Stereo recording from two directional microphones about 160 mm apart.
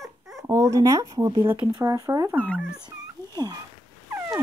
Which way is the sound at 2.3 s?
10° left (ahead or behind).